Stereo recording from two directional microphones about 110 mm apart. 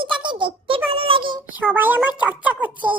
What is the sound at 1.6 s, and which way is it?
A woman's voice, 20° right (ahead or behind).